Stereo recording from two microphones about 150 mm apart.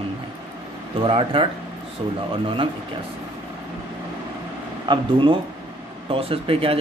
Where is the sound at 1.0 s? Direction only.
35° right (ahead or behind).